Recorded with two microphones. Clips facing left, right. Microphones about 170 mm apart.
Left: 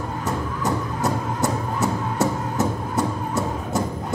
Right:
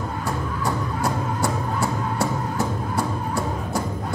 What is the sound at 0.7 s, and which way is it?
Music, 20° left (ahead or behind).